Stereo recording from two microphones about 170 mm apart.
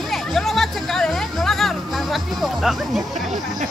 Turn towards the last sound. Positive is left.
turn(degrees=0)  # may be behind; listen again after turning